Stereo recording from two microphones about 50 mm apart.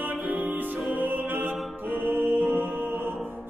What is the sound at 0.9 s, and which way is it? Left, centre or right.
Music, right.